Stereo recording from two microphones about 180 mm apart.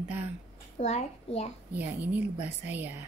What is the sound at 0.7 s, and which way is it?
Speech, 35° left (ahead or behind).